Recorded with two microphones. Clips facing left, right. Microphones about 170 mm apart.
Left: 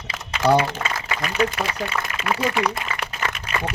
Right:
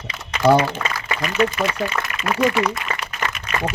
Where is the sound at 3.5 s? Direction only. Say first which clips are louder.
Right 3 dB; 30° left (ahead or behind).